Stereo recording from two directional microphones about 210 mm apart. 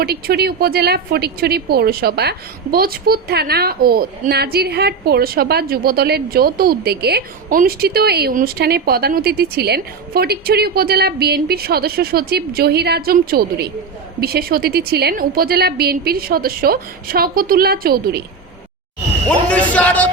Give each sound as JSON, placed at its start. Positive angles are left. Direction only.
{"t": 0.0, "sound": "a woman's voice", "side_deg": -50}
{"t": 19.3, "sound": "speech", "side_deg": 5}